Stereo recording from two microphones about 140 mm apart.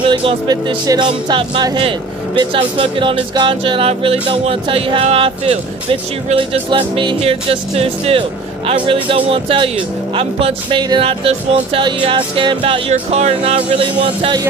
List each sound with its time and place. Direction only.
0.0 s speech: 40° right (ahead or behind)